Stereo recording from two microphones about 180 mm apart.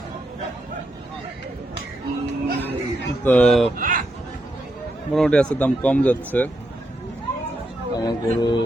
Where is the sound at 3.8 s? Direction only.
45° right (ahead or behind).